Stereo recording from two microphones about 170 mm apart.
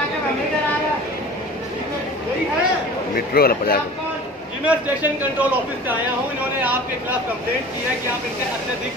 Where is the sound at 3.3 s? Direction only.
60° left (ahead or behind).